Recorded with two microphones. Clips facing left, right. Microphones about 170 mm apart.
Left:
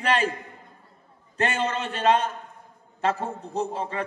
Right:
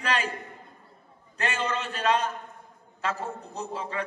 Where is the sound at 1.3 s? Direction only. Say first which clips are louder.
Left 4 dB; 30° left (ahead or behind).